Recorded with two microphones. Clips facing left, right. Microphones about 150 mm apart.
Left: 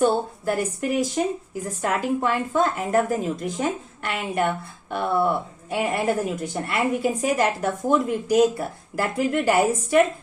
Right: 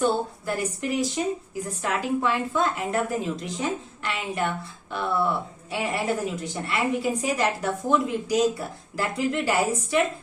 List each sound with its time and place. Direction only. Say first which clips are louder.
0.0 s a woman's voice: left 3 dB; 50° left (ahead or behind)